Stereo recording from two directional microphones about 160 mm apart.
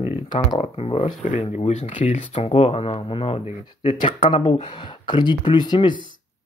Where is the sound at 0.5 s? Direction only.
40° left (ahead or behind).